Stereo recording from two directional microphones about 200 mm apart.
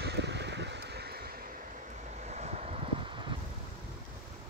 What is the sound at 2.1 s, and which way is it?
Vehicle, 35° right (ahead or behind).